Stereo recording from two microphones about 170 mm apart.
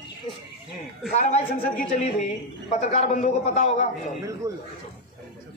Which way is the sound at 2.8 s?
45° left (ahead or behind).